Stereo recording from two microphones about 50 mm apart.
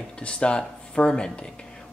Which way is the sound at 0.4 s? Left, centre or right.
Centre.